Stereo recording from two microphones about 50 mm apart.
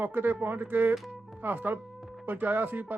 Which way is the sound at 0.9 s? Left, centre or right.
Centre.